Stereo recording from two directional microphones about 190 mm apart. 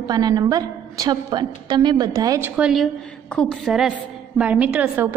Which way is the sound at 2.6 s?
Centre (ahead or behind).